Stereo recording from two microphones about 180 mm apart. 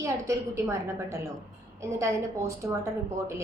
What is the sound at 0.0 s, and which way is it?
A woman's voice, 15° right (ahead or behind).